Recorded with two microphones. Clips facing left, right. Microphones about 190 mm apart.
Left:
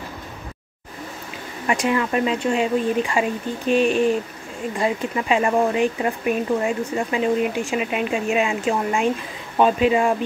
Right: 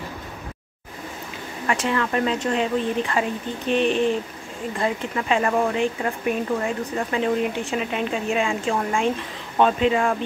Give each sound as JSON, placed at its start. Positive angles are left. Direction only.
{"t": 1.7, "sound": "speech", "side_deg": 15}